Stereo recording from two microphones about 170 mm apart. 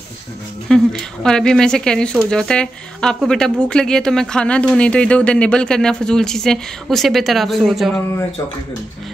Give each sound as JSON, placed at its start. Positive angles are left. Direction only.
{"t": 0.7, "sound": "speech", "side_deg": 5}